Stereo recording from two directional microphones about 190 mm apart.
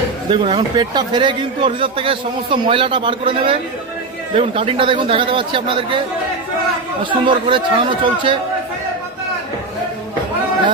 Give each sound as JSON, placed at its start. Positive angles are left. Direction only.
{"t": 0.3, "sound": "a man's voice", "side_deg": -25}
{"t": 7.1, "sound": "a man's voice", "side_deg": -25}